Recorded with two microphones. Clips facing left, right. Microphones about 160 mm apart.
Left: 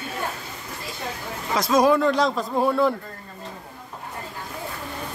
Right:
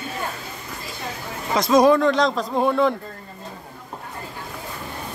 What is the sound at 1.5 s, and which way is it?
Speech, 5° left (ahead or behind).